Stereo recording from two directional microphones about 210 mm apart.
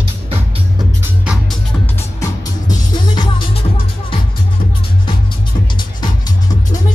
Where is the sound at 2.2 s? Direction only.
20° left (ahead or behind).